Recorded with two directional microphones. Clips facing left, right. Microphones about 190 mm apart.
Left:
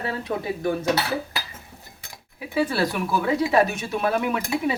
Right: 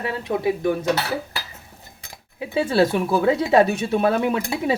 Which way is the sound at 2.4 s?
25° right (ahead or behind).